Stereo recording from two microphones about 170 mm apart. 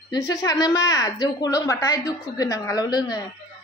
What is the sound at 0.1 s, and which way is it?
A woman's voice, 20° left (ahead or behind).